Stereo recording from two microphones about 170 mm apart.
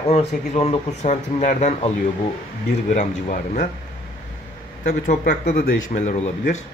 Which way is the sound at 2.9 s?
50° left (ahead or behind).